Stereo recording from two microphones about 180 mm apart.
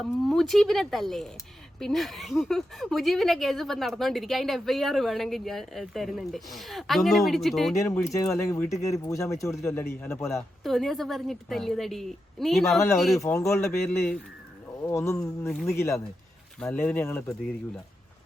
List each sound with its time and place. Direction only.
0.0 s a woman's voice: centre (ahead or behind)
7.8 s speech: 15° left (ahead or behind)
10.6 s a woman's voice: centre (ahead or behind)
13.2 s speech: 15° left (ahead or behind)